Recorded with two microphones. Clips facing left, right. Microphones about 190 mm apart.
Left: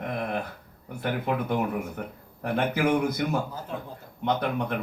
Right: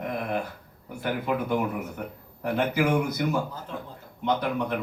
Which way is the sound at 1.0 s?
55° left (ahead or behind).